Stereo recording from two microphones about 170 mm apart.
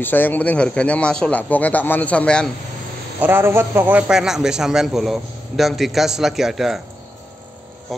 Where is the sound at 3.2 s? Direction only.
15° right (ahead or behind).